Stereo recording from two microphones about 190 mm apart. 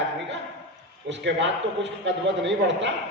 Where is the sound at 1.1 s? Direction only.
70° right (ahead or behind).